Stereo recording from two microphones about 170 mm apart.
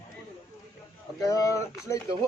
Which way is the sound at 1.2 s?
20° left (ahead or behind).